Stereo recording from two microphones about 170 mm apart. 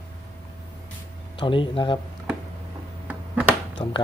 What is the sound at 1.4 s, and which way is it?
Speech, 30° left (ahead or behind).